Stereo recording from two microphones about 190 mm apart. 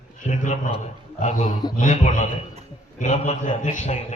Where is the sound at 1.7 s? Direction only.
40° left (ahead or behind).